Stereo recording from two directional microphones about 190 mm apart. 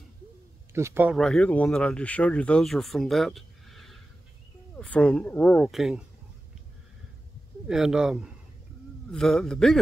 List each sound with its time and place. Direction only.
0.7 s speech: 10° right (ahead or behind)
1.1 s speech: centre (ahead or behind)
7.6 s speech: 5° right (ahead or behind)